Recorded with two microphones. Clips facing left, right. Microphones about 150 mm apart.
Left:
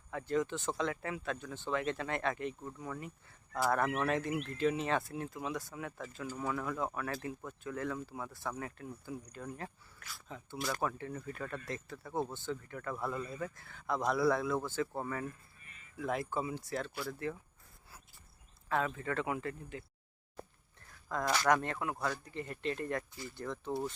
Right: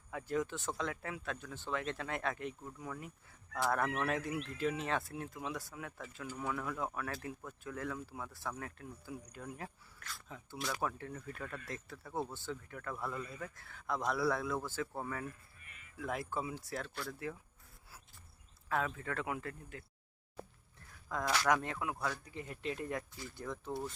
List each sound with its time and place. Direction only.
0.1 s speech: 5° right (ahead or behind)
15.5 s a sound: 35° left (ahead or behind)
16.0 s speech: centre (ahead or behind)
17.8 s a sound: 5° right (ahead or behind)
18.7 s speech: centre (ahead or behind)
21.1 s speech: centre (ahead or behind)